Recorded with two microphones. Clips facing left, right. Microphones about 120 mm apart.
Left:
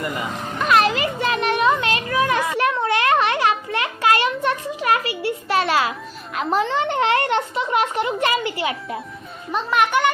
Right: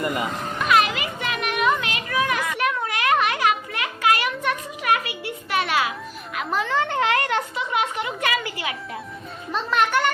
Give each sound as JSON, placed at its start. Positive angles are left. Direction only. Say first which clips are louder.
{"t": 0.7, "sound": "children playing", "louder": "left 3 dB", "side_deg": 35}
{"t": 6.3, "sound": "a child's voice", "louder": "left 3 dB", "side_deg": 30}
{"t": 9.5, "sound": "speech", "louder": "left 2 dB", "side_deg": 15}